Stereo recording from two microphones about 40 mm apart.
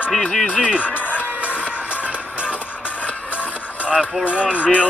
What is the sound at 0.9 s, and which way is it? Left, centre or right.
Music, left.